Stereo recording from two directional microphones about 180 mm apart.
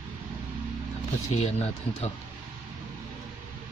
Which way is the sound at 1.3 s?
35° left (ahead or behind).